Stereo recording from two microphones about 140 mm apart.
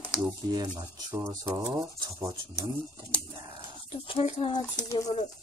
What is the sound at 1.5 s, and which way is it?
Speech, 25° right (ahead or behind).